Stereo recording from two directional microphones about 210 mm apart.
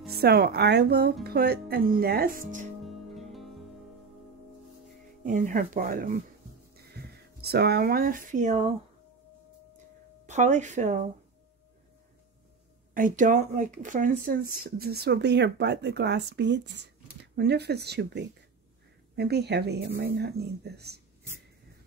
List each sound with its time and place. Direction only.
0.1 s speech: 50° right (ahead or behind)
2.8 s music: centre (ahead or behind)
5.2 s speech: 40° right (ahead or behind)
10.2 s speech: 35° right (ahead or behind)
12.9 s speech: 40° right (ahead or behind)